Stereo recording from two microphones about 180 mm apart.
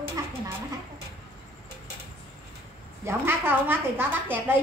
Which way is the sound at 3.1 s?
10° right (ahead or behind).